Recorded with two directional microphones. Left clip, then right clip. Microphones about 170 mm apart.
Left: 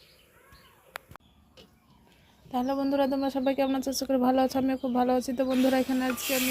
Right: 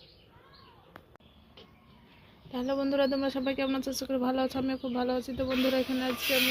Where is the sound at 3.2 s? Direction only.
30° left (ahead or behind); by 6.1 s 50° left (ahead or behind).